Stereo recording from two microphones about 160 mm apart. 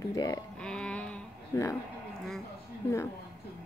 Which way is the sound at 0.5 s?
5° left (ahead or behind).